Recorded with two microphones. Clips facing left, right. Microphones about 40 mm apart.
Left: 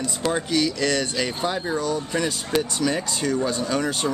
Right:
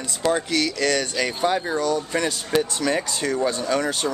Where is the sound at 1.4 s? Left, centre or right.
Centre.